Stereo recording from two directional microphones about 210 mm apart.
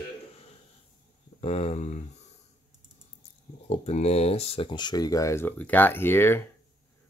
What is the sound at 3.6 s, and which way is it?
Speech, 30° left (ahead or behind).